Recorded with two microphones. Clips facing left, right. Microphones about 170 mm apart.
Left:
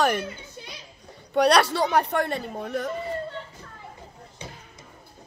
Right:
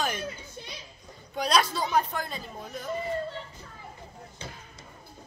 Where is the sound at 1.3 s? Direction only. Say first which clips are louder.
Left 7 dB; 70° left (ahead or behind).